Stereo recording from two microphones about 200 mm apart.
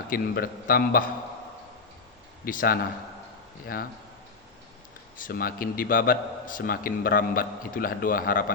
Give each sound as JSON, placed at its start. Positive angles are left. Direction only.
{"t": 0.1, "sound": "a man's voice", "side_deg": 45}
{"t": 2.4, "sound": "a man's voice", "side_deg": 45}
{"t": 5.1, "sound": "a man's voice", "side_deg": 45}